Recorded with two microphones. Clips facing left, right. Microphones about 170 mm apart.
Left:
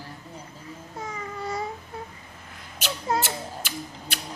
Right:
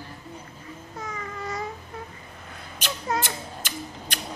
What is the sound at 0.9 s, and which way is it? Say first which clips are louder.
Babbling: left 1 dB; 30° left (ahead or behind).